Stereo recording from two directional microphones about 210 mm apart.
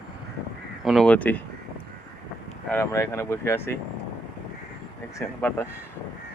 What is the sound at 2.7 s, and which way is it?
Speech, 10° left (ahead or behind).